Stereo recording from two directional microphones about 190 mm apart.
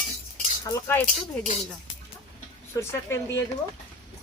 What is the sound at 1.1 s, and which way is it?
Speech, 35° left (ahead or behind).